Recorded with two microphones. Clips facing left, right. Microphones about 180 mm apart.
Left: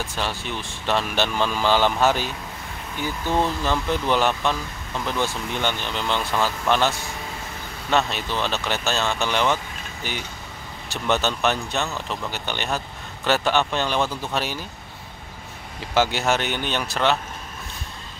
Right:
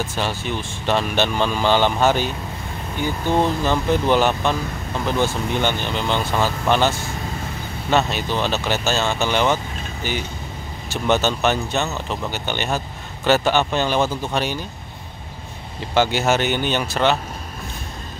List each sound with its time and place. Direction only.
0.0 s speech: centre (ahead or behind)
3.1 s speech: 25° right (ahead or behind)
3.6 s speech: centre (ahead or behind)
8.1 s speech: centre (ahead or behind)
15.9 s speech: centre (ahead or behind)